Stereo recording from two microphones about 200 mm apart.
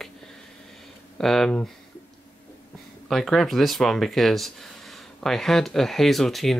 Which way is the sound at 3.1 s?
Centre (ahead or behind).